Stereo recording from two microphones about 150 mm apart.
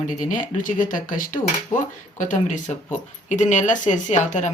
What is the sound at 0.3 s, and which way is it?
Speech, 60° left (ahead or behind).